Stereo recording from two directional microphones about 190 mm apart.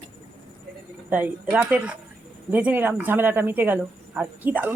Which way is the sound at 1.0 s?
10° right (ahead or behind).